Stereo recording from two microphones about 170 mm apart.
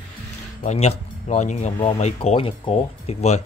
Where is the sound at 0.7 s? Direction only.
40° left (ahead or behind).